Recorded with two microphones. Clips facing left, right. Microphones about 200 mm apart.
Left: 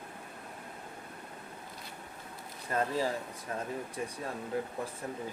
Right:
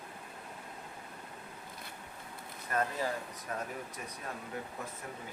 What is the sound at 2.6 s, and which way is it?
Speech, 30° left (ahead or behind).